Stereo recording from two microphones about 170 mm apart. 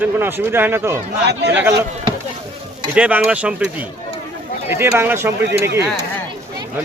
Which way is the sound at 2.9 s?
5° right (ahead or behind).